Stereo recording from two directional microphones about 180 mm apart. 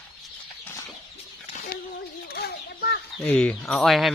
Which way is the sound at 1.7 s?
55° left (ahead or behind).